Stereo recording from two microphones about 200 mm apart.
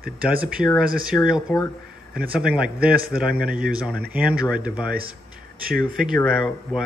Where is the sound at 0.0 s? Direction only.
45° right (ahead or behind).